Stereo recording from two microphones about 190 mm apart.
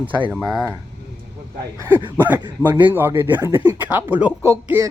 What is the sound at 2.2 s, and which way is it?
Speech, 10° right (ahead or behind).